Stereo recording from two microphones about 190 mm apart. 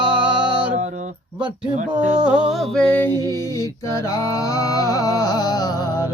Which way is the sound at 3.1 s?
20° right (ahead or behind).